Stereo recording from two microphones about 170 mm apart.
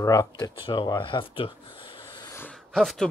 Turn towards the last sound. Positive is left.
turn(degrees=0)  # may be behind; listen again after turning